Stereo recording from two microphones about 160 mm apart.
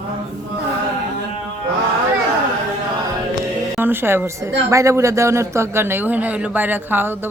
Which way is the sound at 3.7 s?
15° right (ahead or behind).